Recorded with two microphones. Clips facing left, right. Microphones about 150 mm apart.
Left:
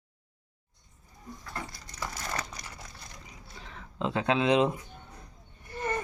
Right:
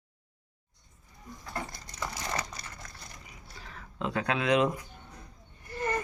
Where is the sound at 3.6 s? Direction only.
25° left (ahead or behind).